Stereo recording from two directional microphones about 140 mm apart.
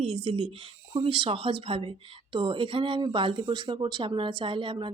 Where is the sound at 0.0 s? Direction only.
40° right (ahead or behind).